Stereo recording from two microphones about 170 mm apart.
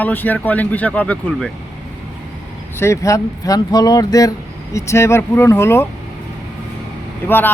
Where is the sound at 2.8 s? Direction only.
15° left (ahead or behind).